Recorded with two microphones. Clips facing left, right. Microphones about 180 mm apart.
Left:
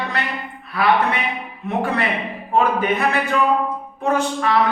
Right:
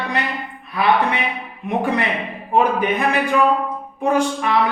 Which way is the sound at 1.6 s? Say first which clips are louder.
Right 1 dB; 15° right (ahead or behind).